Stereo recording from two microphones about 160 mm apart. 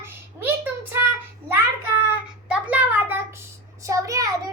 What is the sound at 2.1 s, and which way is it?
Child singing, 10° right (ahead or behind).